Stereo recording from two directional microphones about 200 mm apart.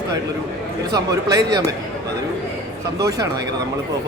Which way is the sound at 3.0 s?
15° right (ahead or behind).